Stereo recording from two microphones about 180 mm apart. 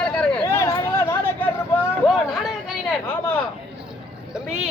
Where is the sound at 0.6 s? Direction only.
15° left (ahead or behind).